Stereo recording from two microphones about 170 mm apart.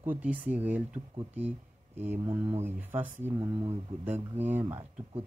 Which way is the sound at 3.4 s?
30° right (ahead or behind).